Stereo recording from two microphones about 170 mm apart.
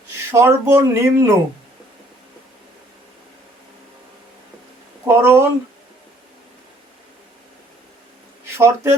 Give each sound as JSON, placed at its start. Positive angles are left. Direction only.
{"t": 0.3, "sound": "speech", "side_deg": -15}
{"t": 5.0, "sound": "speech", "side_deg": -10}
{"t": 8.4, "sound": "speech", "side_deg": -15}